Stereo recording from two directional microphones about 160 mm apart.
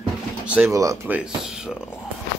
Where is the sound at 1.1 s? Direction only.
5° right (ahead or behind).